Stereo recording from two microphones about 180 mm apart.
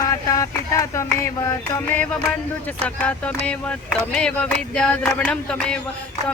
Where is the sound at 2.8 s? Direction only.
10° left (ahead or behind).